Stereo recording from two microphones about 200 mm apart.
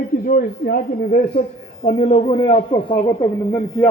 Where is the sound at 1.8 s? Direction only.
30° left (ahead or behind).